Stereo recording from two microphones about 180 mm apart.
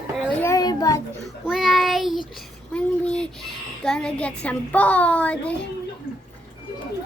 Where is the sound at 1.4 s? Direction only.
Centre (ahead or behind).